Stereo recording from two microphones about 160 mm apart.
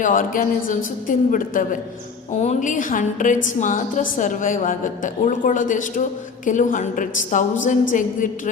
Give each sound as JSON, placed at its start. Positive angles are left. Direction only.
{"t": 0.0, "sound": "a woman's voice", "side_deg": 55}
{"t": 2.4, "sound": "a woman's voice", "side_deg": 45}